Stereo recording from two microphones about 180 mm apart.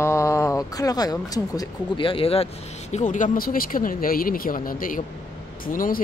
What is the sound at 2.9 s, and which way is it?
Speech, 45° left (ahead or behind).